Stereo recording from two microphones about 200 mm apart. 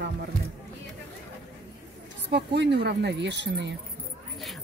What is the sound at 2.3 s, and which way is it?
Speech, 60° right (ahead or behind).